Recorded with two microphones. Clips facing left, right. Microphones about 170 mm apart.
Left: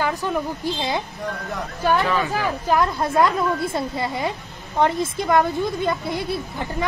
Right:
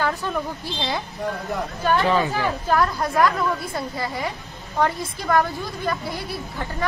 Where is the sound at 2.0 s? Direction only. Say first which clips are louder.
Right 2 dB; 30° right (ahead or behind).